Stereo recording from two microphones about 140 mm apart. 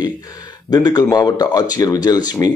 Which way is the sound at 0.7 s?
30° left (ahead or behind).